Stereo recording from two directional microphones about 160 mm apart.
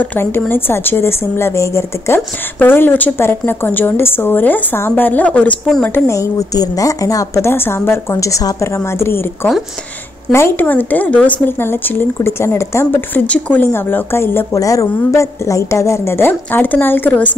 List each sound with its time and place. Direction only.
0.0 s speech: 10° left (ahead or behind)
6.0 s speech: 20° left (ahead or behind)